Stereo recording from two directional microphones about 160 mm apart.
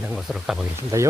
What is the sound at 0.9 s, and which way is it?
Speech, 15° right (ahead or behind).